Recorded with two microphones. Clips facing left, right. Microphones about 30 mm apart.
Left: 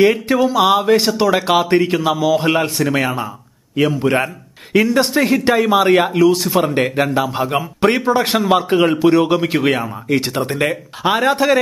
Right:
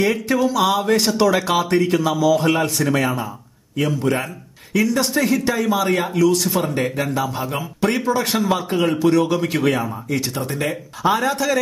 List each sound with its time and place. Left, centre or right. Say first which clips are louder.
0.0 s speech: left 5 dB; left
1.4 s a man's voice: left 4 dB; left
6.1 s speech: left 4 dB; left
6.7 s a man's voice: left 5 dB; left
10.0 s a man's voice: left 6 dB; left